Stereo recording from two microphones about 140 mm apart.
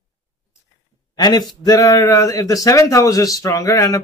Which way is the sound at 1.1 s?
30° left (ahead or behind).